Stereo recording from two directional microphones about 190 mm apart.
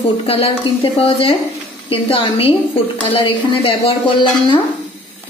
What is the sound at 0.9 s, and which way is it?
A woman's voice, 30° left (ahead or behind).